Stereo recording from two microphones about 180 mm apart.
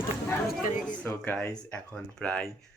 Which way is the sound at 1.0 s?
10° left (ahead or behind).